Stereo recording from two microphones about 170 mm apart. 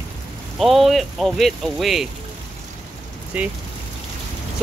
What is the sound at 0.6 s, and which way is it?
Speech, centre (ahead or behind).